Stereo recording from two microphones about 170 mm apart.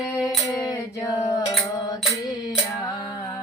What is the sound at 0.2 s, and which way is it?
Mantra, centre (ahead or behind).